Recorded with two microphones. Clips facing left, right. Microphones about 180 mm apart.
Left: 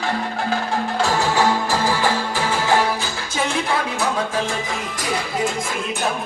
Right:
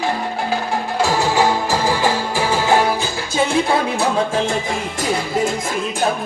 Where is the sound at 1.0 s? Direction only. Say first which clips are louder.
Right 3 dB; 10° right (ahead or behind).